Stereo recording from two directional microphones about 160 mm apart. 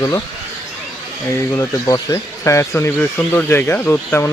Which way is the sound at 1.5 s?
20° left (ahead or behind).